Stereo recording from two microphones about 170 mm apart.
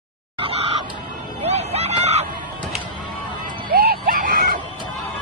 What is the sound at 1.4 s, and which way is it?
Hubbub, 40° right (ahead or behind).